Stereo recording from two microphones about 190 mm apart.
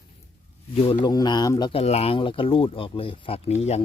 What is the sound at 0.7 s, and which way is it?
Speech, 30° left (ahead or behind).